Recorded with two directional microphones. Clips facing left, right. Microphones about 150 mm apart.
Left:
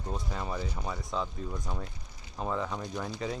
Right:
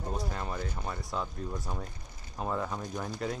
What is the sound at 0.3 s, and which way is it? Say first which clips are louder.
Speech: left 1 dB; 5° left (ahead or behind).